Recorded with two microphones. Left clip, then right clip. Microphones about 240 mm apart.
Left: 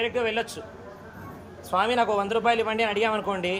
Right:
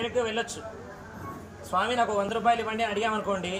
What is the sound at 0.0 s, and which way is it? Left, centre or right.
Speech, centre.